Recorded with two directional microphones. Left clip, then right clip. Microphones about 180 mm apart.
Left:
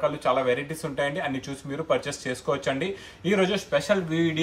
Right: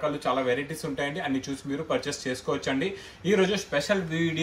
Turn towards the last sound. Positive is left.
turn(degrees=15)  # may be behind; listen again after turning